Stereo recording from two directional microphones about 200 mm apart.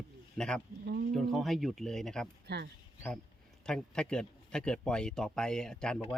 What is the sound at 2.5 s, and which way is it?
Speech, 55° right (ahead or behind).